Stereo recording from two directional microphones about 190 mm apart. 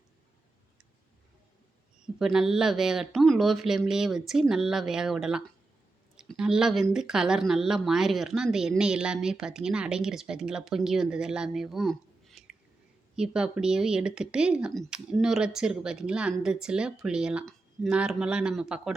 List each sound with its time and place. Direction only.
2.1 s speech: centre (ahead or behind)